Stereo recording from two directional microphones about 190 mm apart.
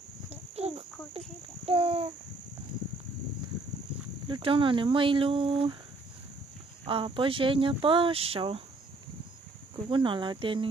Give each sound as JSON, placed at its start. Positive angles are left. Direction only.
{"t": 0.3, "sound": "insect", "side_deg": -35}
{"t": 1.7, "sound": "a sound", "side_deg": -30}
{"t": 4.3, "sound": "speech", "side_deg": -25}
{"t": 6.8, "sound": "speech", "side_deg": -25}
{"t": 9.8, "sound": "speech", "side_deg": -25}